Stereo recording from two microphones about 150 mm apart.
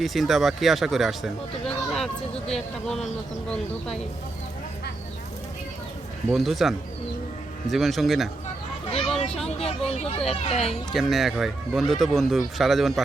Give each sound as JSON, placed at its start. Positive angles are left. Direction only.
{"t": 0.0, "sound": "speech", "side_deg": 0}
{"t": 6.3, "sound": "speech", "side_deg": 0}
{"t": 9.6, "sound": "speech", "side_deg": 40}
{"t": 10.9, "sound": "speech", "side_deg": 0}